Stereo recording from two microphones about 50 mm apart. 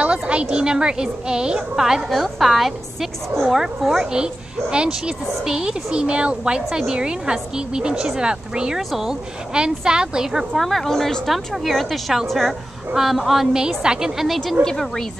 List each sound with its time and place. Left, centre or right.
0.0 s a woman's voice: right
10.6 s a woman's voice: centre
14.2 s a woman's voice: centre
14.6 s a woman's voice: centre